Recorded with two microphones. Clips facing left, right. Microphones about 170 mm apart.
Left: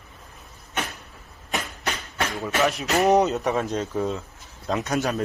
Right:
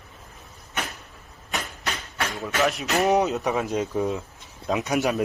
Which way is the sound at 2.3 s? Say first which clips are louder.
Left 1 dB; centre (ahead or behind).